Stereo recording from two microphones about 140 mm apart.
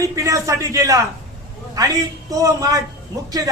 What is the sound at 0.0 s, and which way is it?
A man's voice, 25° right (ahead or behind).